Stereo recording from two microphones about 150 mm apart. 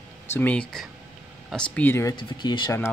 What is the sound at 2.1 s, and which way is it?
Speech, 30° left (ahead or behind).